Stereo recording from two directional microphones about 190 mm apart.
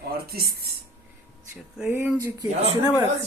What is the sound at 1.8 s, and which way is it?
Speech, 5° right (ahead or behind).